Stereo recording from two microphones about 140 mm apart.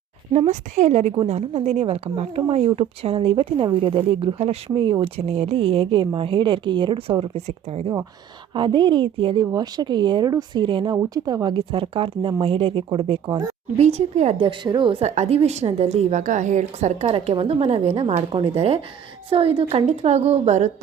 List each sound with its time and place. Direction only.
0.3 s a woman's voice: 55° right (ahead or behind)
8.5 s a woman's voice: 35° right (ahead or behind)
13.7 s a woman's voice: 50° right (ahead or behind)
14.4 s a woman's voice: 35° right (ahead or behind)
15.1 s a woman's voice: 50° right (ahead or behind)
17.1 s a woman's voice: 40° right (ahead or behind)